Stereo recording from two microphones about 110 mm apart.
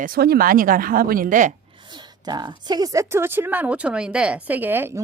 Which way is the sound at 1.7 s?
40° right (ahead or behind).